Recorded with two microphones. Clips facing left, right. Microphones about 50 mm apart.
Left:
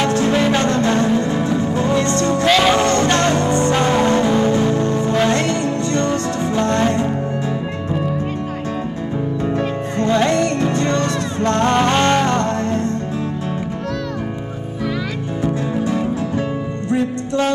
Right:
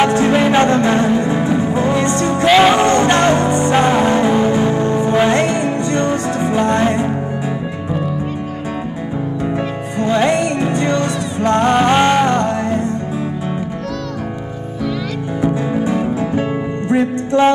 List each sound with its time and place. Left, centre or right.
0.0 s music: right
9.9 s music: centre
15.4 s music: right